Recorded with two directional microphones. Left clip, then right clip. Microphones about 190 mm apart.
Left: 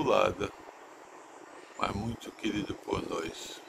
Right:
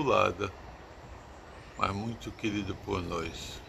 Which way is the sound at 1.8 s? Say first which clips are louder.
Right 2 dB; 15° left (ahead or behind).